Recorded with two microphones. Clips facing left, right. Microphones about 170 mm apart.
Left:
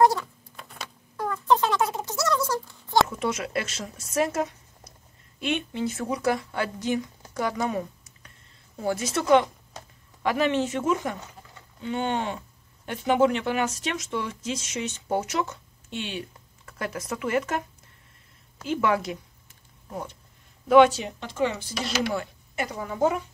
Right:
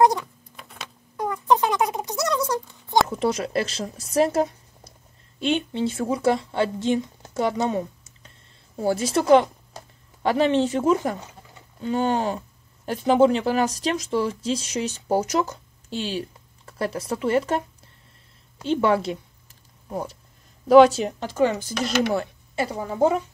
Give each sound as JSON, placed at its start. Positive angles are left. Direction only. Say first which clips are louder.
{"t": 0.0, "sound": "cat", "louder": "right 2 dB", "side_deg": -15}
{"t": 1.1, "sound": "a sound", "louder": "right 2 dB", "side_deg": -15}
{"t": 3.1, "sound": "a woman's voice", "louder": "right 5 dB", "side_deg": -35}
{"t": 22.1, "sound": "speech", "louder": "right 5 dB", "side_deg": -30}